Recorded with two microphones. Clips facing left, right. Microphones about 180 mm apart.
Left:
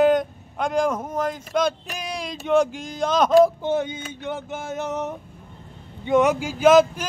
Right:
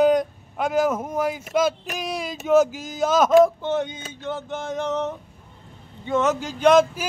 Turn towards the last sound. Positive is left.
turn(degrees=5)  # may be behind; listen again after turning